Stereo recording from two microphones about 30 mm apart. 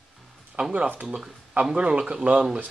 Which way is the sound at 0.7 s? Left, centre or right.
Right.